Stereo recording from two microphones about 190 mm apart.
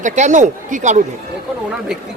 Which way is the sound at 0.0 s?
40° right (ahead or behind).